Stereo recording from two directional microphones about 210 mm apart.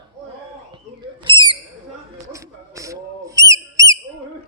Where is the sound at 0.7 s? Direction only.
20° right (ahead or behind).